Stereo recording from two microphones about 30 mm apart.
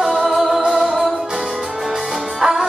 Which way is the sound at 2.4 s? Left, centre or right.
Centre.